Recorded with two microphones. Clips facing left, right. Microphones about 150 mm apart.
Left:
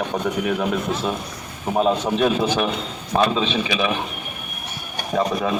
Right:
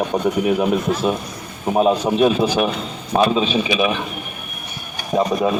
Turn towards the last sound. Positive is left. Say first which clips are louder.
# right 3 dB
turn(degrees=-15)  # may be behind; listen again after turning